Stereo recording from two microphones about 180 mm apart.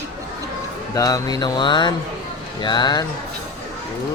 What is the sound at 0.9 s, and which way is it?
Speech, 20° left (ahead or behind).